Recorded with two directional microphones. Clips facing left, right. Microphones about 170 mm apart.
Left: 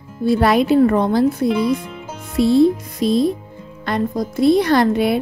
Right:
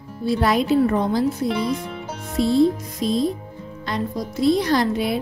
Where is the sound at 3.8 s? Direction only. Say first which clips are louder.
Left 6 dB; 50° left (ahead or behind).